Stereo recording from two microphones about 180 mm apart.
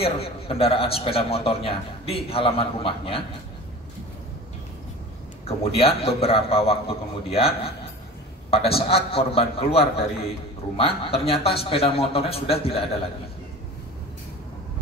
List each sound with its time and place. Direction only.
0.0 s a man's voice: 35° left (ahead or behind)
5.5 s a man's voice: 35° left (ahead or behind)